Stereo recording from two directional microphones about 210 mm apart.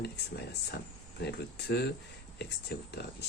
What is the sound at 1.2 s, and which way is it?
Speech, 50° left (ahead or behind).